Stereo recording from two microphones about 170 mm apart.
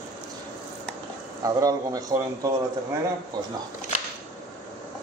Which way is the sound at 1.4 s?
20° right (ahead or behind).